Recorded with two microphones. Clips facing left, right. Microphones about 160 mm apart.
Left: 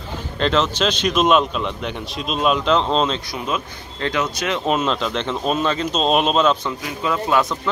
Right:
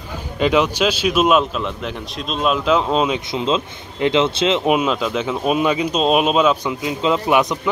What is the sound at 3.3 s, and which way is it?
Speech, 20° right (ahead or behind).